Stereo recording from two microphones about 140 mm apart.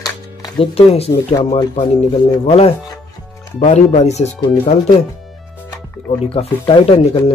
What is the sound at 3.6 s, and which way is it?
Speech, 55° left (ahead or behind).